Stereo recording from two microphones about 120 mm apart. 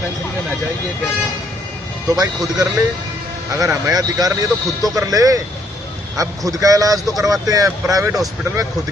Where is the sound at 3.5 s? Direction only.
25° right (ahead or behind).